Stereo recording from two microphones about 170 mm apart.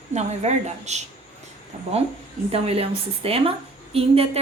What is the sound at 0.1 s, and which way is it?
Speech, 40° right (ahead or behind).